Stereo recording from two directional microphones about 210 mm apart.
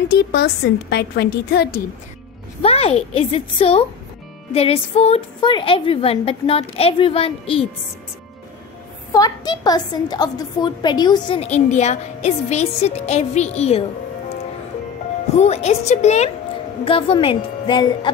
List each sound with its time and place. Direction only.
0.1 s a woman's voice: 50° left (ahead or behind)
2.6 s a woman's voice: 30° left (ahead or behind)
9.1 s a woman's voice: 20° left (ahead or behind)
15.3 s a woman's voice: 30° left (ahead or behind)